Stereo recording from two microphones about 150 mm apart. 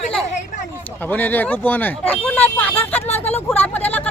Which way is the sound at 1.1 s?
10° left (ahead or behind).